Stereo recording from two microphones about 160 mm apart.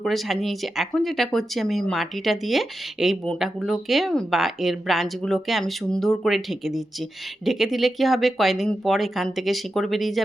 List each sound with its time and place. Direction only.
0.0 s speech: centre (ahead or behind)